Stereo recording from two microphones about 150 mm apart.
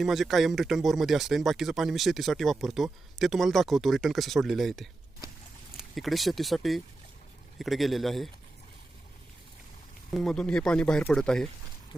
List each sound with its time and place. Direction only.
0.0 s speech: centre (ahead or behind)
5.9 s speech: centre (ahead or behind)
10.1 s speech: 5° left (ahead or behind)